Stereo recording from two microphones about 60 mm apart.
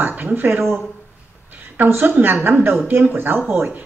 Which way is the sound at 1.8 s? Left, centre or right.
Right.